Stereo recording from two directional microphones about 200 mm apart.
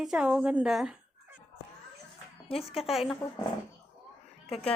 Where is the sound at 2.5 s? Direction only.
30° left (ahead or behind).